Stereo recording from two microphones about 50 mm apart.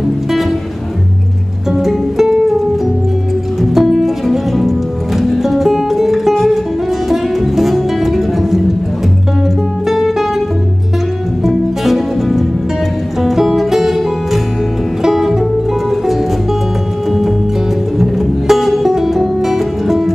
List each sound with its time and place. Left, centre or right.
1.7 s music: centre
3.7 s music: centre
9.8 s music: centre
11.4 s music: centre
17.9 s music: centre